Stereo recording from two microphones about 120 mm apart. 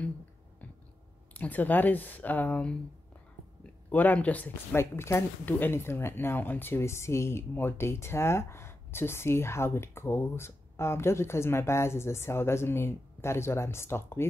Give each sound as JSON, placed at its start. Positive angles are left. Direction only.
{"t": 1.3, "sound": "speech", "side_deg": 15}
{"t": 3.9, "sound": "speech", "side_deg": 15}